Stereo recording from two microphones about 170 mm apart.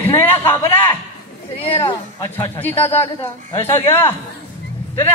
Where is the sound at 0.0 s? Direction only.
10° left (ahead or behind).